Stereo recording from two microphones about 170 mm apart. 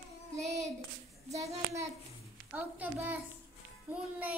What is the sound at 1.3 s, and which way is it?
Child singing, 40° right (ahead or behind).